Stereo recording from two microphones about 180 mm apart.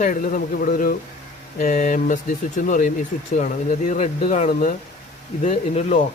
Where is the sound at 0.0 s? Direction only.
50° left (ahead or behind).